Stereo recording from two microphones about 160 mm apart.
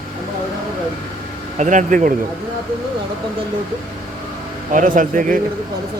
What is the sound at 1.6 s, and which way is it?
Speech, 50° right (ahead or behind).